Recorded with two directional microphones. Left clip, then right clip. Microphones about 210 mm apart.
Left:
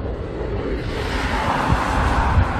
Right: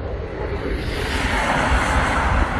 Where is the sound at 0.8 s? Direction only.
45° right (ahead or behind); by 2.6 s 20° right (ahead or behind).